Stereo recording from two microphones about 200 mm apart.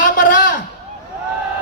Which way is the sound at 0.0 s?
40° left (ahead or behind).